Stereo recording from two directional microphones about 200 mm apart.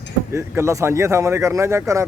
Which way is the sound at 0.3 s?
15° right (ahead or behind).